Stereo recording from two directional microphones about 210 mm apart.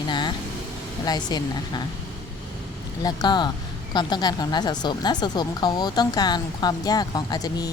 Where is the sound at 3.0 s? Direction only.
20° left (ahead or behind).